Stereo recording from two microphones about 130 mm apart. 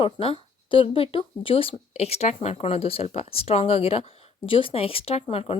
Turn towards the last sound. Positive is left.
turn(degrees=50)  # may be behind; listen again after turning